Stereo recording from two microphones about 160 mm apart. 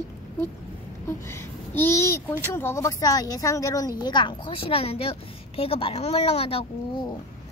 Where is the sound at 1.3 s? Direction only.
15° left (ahead or behind); by 6.7 s 35° left (ahead or behind).